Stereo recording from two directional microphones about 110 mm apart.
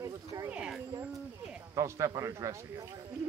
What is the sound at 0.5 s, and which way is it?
Speech, 10° right (ahead or behind).